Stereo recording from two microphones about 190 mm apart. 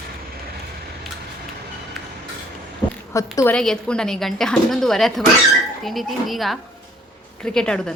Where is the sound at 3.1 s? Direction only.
15° left (ahead or behind).